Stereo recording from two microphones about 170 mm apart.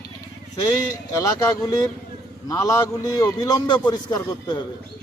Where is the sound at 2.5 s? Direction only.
20° left (ahead or behind).